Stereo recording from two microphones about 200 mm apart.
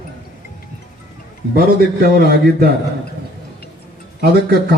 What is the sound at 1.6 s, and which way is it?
A man's voice, 50° right (ahead or behind).